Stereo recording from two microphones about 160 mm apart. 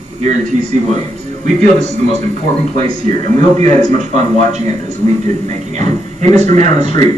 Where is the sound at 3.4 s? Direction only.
50° right (ahead or behind).